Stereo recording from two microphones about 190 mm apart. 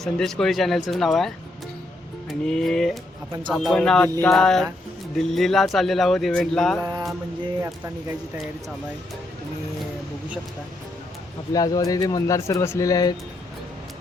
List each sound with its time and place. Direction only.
0.0 s speech: centre (ahead or behind)
2.4 s speech: 5° left (ahead or behind)
11.5 s speech: 20° left (ahead or behind)